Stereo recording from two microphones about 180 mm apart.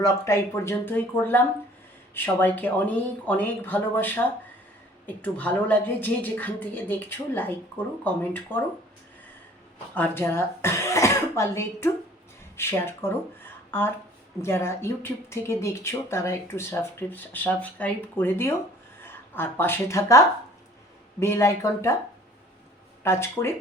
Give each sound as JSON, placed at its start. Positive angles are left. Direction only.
{"t": 0.0, "sound": "speech", "side_deg": 15}
{"t": 9.9, "sound": "speech", "side_deg": 10}
{"t": 23.0, "sound": "speech", "side_deg": 15}